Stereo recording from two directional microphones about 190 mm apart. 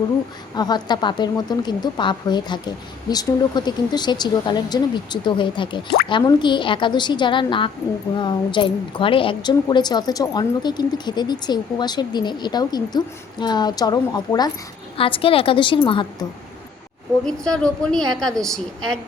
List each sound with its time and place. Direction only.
0.5 s a woman's voice: 20° left (ahead or behind)
17.2 s a woman's voice: 5° left (ahead or behind)